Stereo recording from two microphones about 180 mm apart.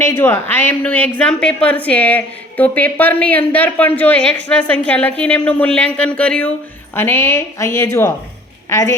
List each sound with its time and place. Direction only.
0.0 s a woman's voice: 10° left (ahead or behind)